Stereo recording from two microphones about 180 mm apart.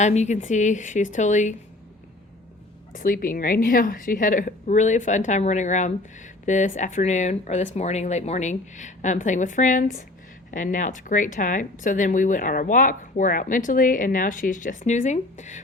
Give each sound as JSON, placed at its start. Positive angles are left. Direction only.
{"t": 0.0, "sound": "speech", "side_deg": 40}
{"t": 2.9, "sound": "speech", "side_deg": 50}